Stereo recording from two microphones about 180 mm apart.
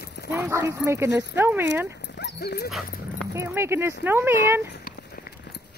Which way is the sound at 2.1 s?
65° left (ahead or behind).